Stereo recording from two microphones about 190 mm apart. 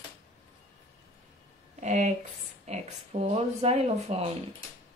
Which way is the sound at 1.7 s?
40° right (ahead or behind).